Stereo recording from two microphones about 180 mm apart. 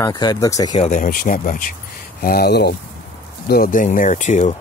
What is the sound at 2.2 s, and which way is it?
Speech, 55° left (ahead or behind).